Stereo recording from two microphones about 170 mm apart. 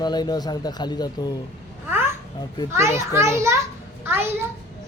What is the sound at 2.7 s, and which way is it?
A woman's voice, 15° right (ahead or behind).